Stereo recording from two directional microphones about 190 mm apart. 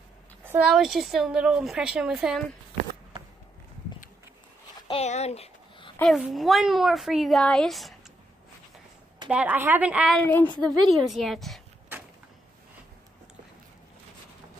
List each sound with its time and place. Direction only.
0.4 s speech: 10° right (ahead or behind)
4.8 s a sound: 35° left (ahead or behind)
5.9 s speech: centre (ahead or behind)
9.3 s a woman's voice: 5° right (ahead or behind)
10.2 s a woman's voice: 10° left (ahead or behind)